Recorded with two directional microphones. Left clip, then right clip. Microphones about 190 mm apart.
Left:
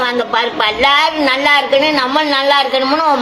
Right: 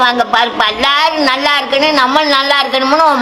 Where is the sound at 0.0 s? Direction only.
15° right (ahead or behind).